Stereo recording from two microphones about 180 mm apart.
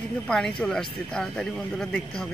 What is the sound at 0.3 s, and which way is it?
Speech, 5° left (ahead or behind).